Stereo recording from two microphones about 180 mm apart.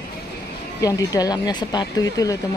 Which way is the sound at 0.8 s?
20° left (ahead or behind).